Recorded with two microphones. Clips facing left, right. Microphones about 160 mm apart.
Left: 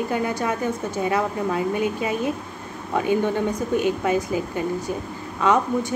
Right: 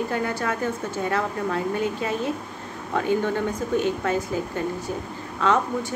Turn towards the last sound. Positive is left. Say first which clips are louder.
# left 2 dB
turn(degrees=15)  # may be behind; listen again after turning